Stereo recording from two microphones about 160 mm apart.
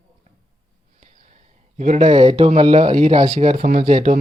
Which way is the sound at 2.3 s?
40° right (ahead or behind).